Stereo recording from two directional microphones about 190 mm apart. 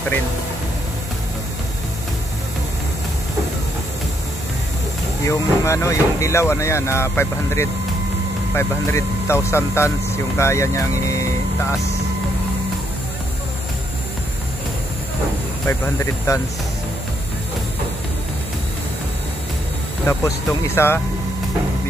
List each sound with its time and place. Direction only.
5.2 s speech: 15° left (ahead or behind)
15.6 s speech: 15° left (ahead or behind)
20.1 s speech: 15° left (ahead or behind)